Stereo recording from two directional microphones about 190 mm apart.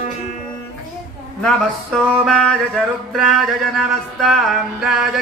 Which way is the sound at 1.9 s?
Centre (ahead or behind).